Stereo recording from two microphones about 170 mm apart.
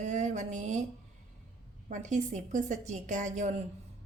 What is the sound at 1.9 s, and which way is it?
A woman's voice, 45° right (ahead or behind).